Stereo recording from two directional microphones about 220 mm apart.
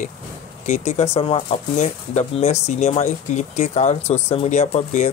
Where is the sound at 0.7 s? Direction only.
30° left (ahead or behind).